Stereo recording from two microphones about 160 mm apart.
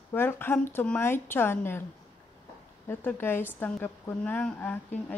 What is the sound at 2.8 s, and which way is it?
A woman's voice, 15° left (ahead or behind).